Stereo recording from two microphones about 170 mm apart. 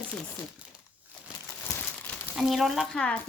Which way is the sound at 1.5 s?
10° left (ahead or behind).